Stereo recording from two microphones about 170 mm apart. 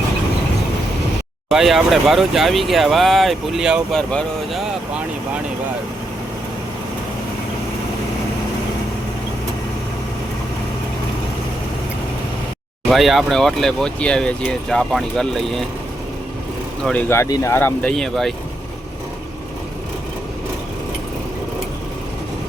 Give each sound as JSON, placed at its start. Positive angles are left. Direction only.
{"t": 1.5, "sound": "speech", "side_deg": 0}
{"t": 12.9, "sound": "speech", "side_deg": 0}
{"t": 17.1, "sound": "speech", "side_deg": 20}
{"t": 17.9, "sound": "speech", "side_deg": 0}